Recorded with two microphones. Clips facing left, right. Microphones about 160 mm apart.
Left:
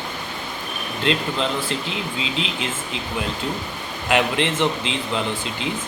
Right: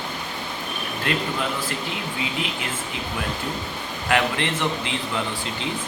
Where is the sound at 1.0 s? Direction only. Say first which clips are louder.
Left 4 dB; 20° left (ahead or behind).